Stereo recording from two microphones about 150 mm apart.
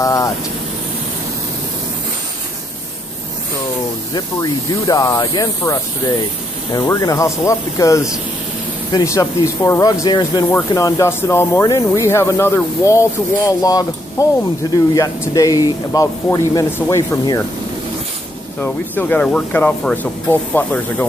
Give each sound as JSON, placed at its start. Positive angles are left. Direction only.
{"t": 0.0, "sound": "vehicle", "side_deg": 20}
{"t": 4.1, "sound": "speech", "side_deg": 25}
{"t": 18.6, "sound": "speech", "side_deg": 10}